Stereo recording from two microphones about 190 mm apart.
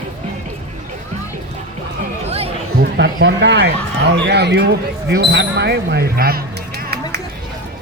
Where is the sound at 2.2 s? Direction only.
30° right (ahead or behind).